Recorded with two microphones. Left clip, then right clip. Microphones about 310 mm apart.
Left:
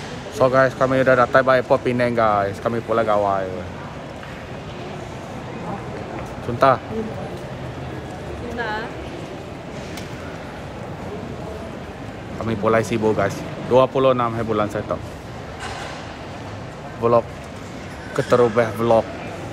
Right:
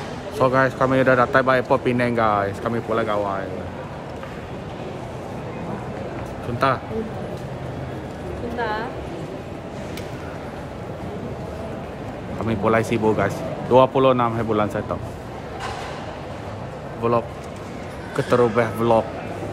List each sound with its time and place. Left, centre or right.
0.4 s speech: centre
6.6 s a man's voice: centre
8.5 s speech: centre
12.4 s speech: centre
17.0 s a man's voice: centre